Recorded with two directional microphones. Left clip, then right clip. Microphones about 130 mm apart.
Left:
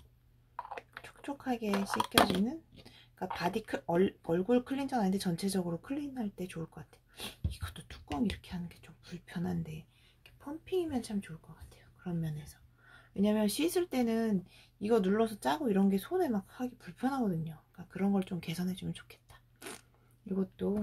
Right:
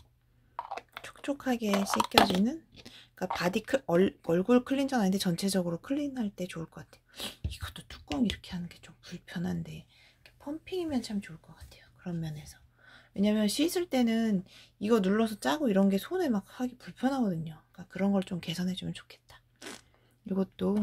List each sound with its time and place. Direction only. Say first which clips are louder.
0.6 s typing: right 4 dB; 40° right (ahead or behind)
2.8 s speech: right 4 dB; 40° right (ahead or behind); by 19.8 s 15° right (ahead or behind)
20.2 s speech: right 4 dB; 40° right (ahead or behind)